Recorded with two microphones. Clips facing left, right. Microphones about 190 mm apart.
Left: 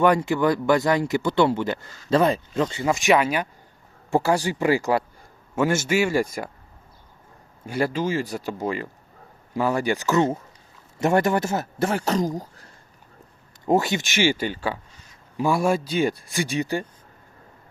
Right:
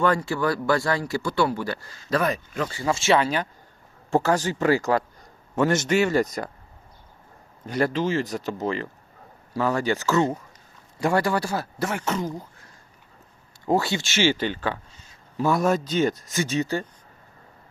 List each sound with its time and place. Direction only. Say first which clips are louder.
0.0 s speech: left 4 dB; 15° left (ahead or behind)
7.7 s speech: even; 5° left (ahead or behind); by 12.3 s 35° left (ahead or behind)
13.7 s speech: left 2 dB; 20° left (ahead or behind)